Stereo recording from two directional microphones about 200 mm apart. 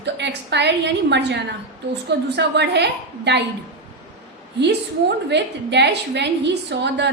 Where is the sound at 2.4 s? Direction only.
60° right (ahead or behind).